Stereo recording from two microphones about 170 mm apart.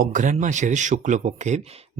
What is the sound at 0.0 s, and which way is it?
Speech, 50° right (ahead or behind).